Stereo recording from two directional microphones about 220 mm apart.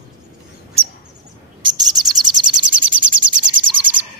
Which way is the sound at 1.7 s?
20° right (ahead or behind).